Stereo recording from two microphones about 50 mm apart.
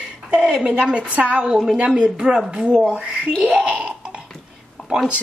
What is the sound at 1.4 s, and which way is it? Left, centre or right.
A woman's voice, centre.